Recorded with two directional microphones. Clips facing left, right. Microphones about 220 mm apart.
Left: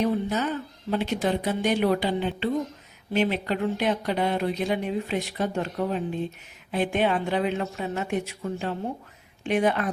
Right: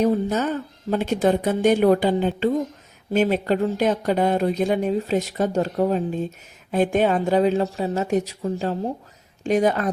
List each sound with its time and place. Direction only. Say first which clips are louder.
0.0 s a woman's voice: right 5 dB; 45° right (ahead or behind)